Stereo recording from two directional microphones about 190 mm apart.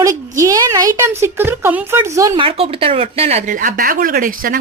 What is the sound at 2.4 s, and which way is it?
Speech, 30° right (ahead or behind).